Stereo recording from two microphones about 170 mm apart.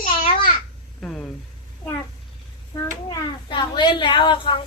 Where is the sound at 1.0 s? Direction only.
5° left (ahead or behind).